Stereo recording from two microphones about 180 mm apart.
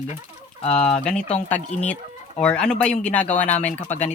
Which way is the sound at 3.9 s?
40° left (ahead or behind).